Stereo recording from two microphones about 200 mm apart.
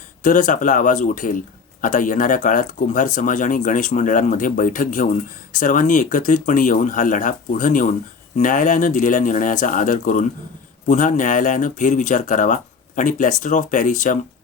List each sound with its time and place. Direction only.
0.2 s speech: 40° left (ahead or behind)